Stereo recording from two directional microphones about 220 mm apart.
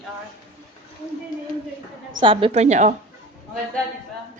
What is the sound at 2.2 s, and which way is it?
Speech, 25° right (ahead or behind).